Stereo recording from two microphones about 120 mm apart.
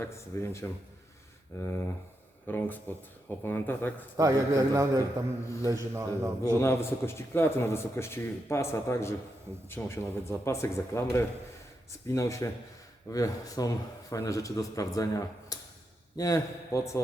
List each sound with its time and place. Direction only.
0.0 s speech: 20° left (ahead or behind)
2.5 s speech: 15° left (ahead or behind)
4.2 s a man's voice: 25° right (ahead or behind)
6.6 s speech: 20° left (ahead or behind)